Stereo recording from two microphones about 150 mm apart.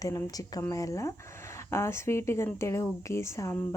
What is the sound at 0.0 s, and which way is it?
Speech, 20° left (ahead or behind).